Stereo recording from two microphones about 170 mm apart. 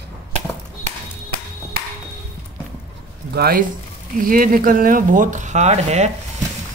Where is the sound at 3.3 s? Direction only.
65° right (ahead or behind).